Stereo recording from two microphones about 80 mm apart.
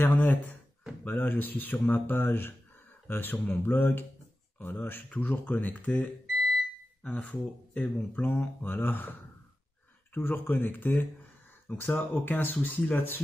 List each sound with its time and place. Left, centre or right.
0.0 s a sound: left
1.0 s speech: left
10.1 s speech: left